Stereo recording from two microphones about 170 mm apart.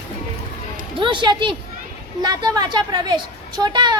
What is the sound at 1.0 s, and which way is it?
A woman's voice, 30° right (ahead or behind).